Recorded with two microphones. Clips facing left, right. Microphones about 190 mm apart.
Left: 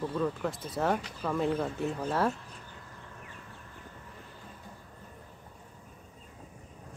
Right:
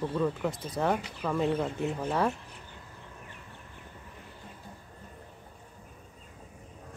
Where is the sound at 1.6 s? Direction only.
20° right (ahead or behind).